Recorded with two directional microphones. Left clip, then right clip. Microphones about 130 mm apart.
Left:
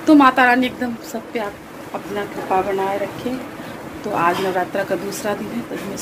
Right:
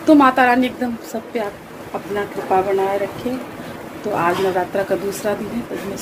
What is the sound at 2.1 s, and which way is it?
Speech, centre (ahead or behind).